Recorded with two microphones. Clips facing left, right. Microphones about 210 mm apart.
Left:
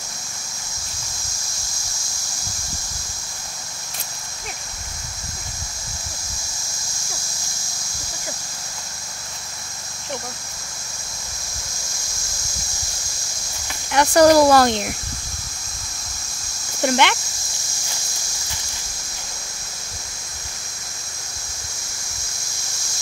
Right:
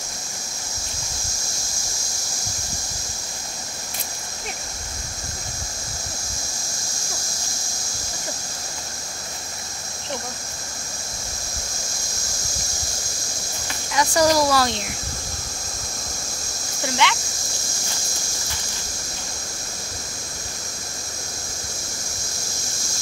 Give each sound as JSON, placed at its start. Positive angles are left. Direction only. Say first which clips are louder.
{"t": 13.9, "sound": "speech", "louder": "left 6 dB", "side_deg": 60}
{"t": 16.8, "sound": "speech", "louder": "left 5 dB", "side_deg": 60}